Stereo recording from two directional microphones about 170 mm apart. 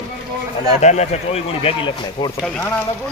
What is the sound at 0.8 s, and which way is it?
Speech, 40° left (ahead or behind).